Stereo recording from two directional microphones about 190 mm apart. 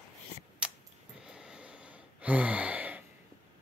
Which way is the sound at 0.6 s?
5° right (ahead or behind).